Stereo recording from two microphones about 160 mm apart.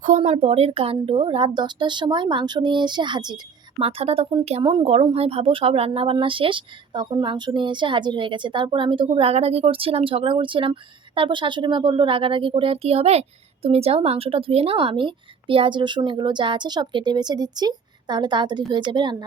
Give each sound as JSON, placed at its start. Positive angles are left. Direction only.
{"t": 0.3, "sound": "a woman's voice", "side_deg": -40}